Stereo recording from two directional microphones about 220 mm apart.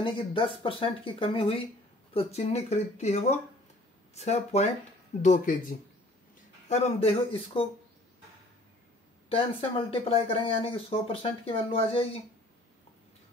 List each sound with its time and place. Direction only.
0.0 s speech: 20° left (ahead or behind); by 5.8 s 35° left (ahead or behind)
6.7 s speech: 25° left (ahead or behind)
9.3 s speech: 25° left (ahead or behind)